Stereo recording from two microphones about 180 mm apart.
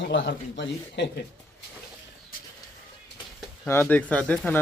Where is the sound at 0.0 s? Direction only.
85° left.